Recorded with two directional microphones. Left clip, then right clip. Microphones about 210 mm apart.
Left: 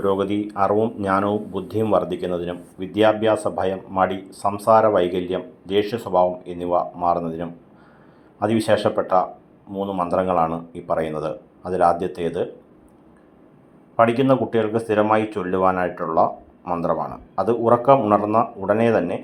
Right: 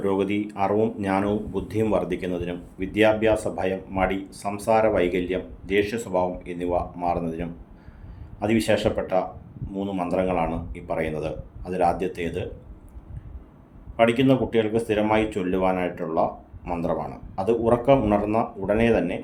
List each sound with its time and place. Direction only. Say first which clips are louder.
0.0 s speech: left 3 dB; 5° left (ahead or behind)
5.8 s speech: left 1 dB; 15° right (ahead or behind)
6.1 s speech: left 6 dB; 5° left (ahead or behind)
13.9 s speech: left 3 dB; 5° left (ahead or behind)